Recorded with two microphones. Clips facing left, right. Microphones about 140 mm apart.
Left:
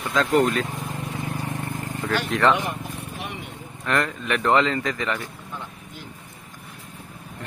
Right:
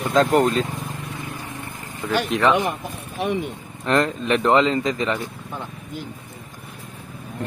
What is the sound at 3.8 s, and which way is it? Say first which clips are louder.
Speech: right 5 dB; 25° right (ahead or behind).